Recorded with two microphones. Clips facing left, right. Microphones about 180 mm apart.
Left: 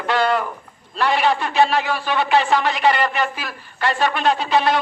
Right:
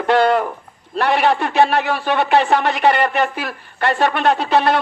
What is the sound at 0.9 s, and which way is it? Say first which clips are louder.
A man's voice: right 2 dB; 60° right (ahead or behind).